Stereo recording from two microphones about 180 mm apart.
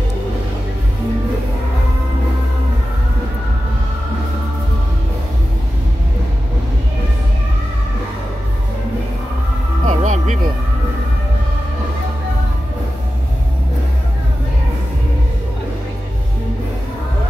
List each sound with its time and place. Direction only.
9.8 s music: 40° right (ahead or behind)